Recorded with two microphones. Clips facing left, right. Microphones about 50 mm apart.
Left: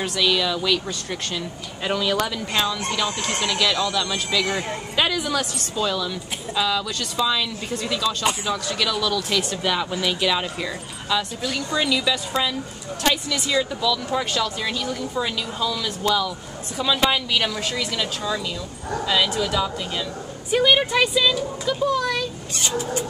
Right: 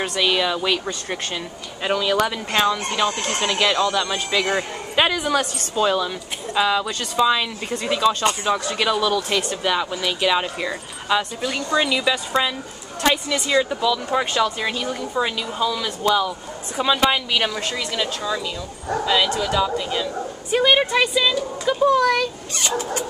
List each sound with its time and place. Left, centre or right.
0.0 s speech: centre
9.4 s speech: centre
10.2 s speech: centre
19.4 s speech: centre
21.7 s speech: right
22.0 s speech: right